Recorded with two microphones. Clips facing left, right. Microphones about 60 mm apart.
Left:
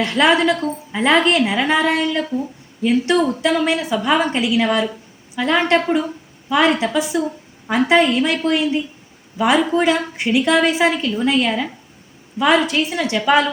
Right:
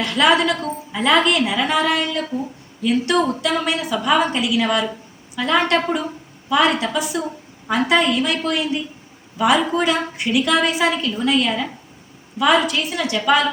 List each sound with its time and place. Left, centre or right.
0.0 s a woman's voice: left